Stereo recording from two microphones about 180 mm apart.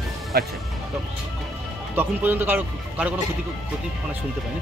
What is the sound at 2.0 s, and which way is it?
Speech, 10° right (ahead or behind).